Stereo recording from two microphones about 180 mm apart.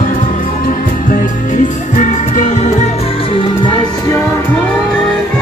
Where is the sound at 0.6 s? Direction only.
50° left (ahead or behind); by 4.2 s 20° left (ahead or behind).